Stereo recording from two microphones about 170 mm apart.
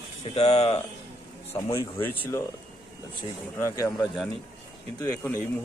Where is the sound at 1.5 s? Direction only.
15° left (ahead or behind).